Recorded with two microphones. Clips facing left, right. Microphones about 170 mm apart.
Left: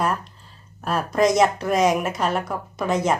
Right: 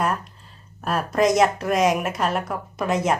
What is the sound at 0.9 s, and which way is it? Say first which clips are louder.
A woman's voice: even; centre (ahead or behind).